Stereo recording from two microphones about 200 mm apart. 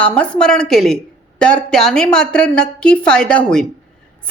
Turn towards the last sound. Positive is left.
turn(degrees=5)  # may be behind; listen again after turning